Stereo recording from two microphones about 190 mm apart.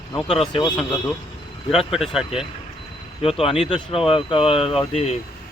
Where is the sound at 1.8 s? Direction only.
Centre (ahead or behind).